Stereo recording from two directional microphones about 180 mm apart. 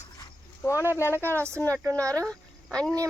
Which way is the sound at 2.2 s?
5° left (ahead or behind).